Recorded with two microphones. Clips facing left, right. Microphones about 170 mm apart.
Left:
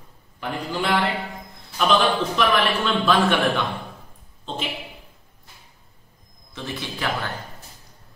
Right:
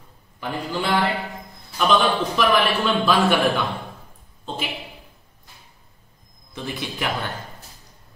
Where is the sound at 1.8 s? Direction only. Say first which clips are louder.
Even; centre (ahead or behind).